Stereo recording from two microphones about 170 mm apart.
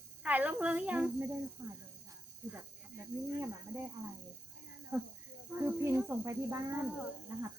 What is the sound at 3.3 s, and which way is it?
Speech, 15° right (ahead or behind).